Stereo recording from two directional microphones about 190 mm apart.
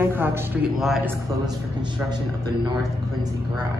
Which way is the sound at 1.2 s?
20° right (ahead or behind).